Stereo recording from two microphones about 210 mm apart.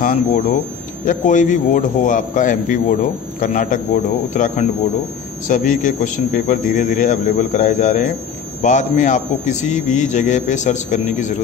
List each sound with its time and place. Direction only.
0.0 s speech: 35° left (ahead or behind)